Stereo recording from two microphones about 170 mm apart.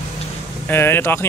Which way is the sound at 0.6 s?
15° left (ahead or behind).